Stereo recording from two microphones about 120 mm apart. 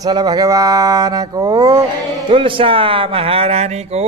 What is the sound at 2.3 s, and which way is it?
Speech, 45° right (ahead or behind).